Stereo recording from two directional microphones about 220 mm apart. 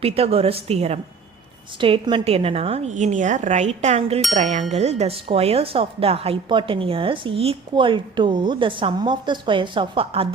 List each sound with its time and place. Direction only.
0.0 s speech: 25° right (ahead or behind)
4.2 s speech: centre (ahead or behind)
4.7 s speech: 30° right (ahead or behind)